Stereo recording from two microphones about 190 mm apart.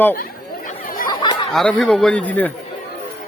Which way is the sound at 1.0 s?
20° left (ahead or behind).